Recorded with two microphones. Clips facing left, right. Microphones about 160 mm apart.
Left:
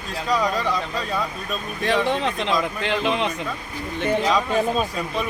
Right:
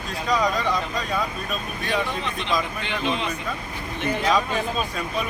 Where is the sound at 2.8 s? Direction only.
75° left (ahead or behind).